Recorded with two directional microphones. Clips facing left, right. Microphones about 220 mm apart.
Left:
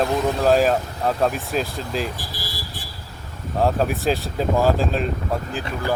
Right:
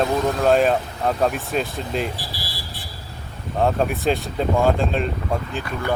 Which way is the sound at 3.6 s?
Centre (ahead or behind).